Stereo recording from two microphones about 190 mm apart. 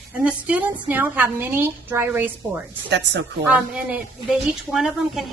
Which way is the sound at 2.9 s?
70° right (ahead or behind).